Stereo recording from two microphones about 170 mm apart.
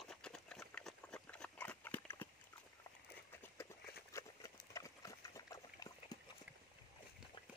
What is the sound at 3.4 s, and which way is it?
Run, 15° left (ahead or behind).